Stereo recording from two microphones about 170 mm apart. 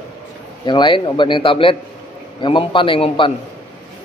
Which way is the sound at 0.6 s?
25° left (ahead or behind).